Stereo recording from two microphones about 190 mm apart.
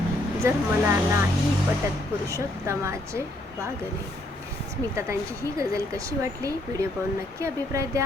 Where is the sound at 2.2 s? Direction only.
15° right (ahead or behind).